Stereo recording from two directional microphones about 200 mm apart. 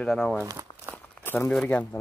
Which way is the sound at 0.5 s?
15° right (ahead or behind).